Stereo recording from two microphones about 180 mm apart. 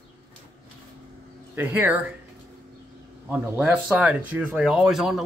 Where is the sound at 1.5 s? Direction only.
10° right (ahead or behind).